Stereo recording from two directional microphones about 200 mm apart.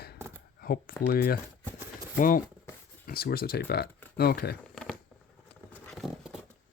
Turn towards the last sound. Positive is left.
turn(degrees=0)  # may be behind; listen again after turning